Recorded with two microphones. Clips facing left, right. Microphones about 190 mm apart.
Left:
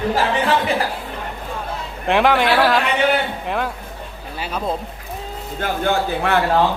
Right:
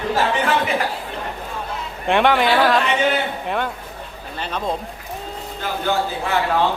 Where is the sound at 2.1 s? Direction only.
Centre (ahead or behind).